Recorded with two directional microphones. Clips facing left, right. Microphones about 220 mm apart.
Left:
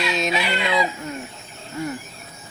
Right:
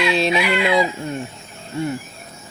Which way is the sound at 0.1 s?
30° right (ahead or behind).